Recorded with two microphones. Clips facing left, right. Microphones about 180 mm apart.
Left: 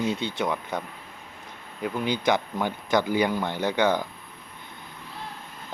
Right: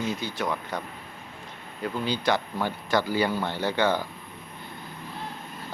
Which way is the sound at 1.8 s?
15° left (ahead or behind).